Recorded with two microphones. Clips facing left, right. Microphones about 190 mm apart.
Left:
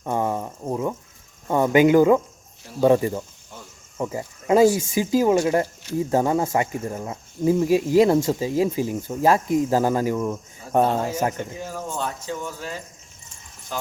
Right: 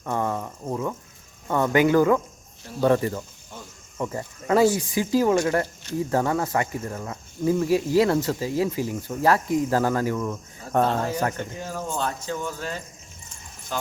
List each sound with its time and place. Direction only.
0.0 s a sound: 20° left (ahead or behind)
1.5 s speech: 20° left (ahead or behind)
11.1 s speech: 25° left (ahead or behind)
11.3 s speech: 5° left (ahead or behind)